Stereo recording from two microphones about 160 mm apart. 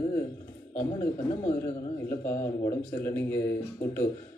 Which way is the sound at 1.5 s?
15° left (ahead or behind).